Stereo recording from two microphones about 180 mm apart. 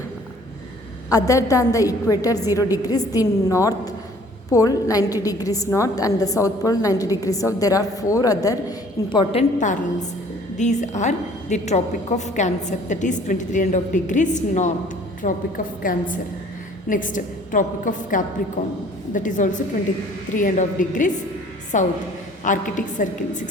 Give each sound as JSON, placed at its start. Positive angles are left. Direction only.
{"t": 1.1, "sound": "a woman's voice", "side_deg": 20}